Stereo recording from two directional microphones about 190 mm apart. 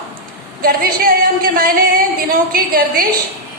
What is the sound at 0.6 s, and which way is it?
Speech, 50° right (ahead or behind).